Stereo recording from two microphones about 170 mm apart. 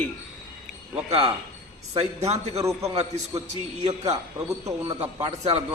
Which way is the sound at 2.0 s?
40° right (ahead or behind).